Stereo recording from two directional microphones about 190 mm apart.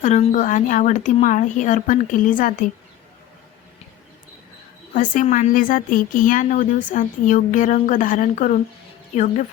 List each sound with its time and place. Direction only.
0.0 s speech: 40° left (ahead or behind)
4.9 s a woman's voice: 45° left (ahead or behind)